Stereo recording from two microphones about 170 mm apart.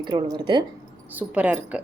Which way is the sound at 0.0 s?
25° right (ahead or behind).